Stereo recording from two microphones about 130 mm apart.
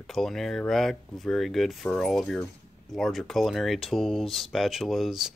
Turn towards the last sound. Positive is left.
turn(degrees=0)  # may be behind; listen again after turning